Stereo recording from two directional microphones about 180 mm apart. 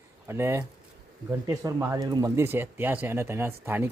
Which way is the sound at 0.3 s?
15° right (ahead or behind).